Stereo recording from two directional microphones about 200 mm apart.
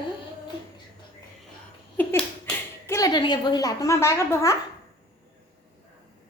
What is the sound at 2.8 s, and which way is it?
A woman's voice, 15° left (ahead or behind).